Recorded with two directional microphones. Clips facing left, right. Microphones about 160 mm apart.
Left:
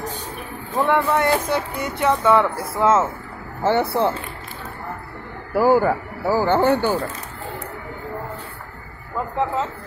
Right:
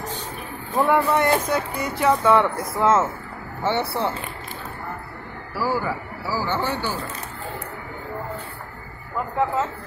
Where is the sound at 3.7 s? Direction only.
50° left (ahead or behind).